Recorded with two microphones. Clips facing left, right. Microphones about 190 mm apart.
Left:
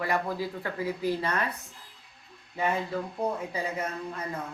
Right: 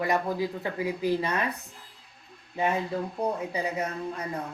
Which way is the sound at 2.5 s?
20° right (ahead or behind).